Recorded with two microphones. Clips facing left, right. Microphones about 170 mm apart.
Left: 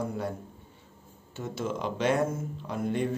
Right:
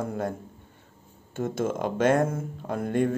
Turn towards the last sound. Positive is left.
turn(degrees=-50)  # may be behind; listen again after turning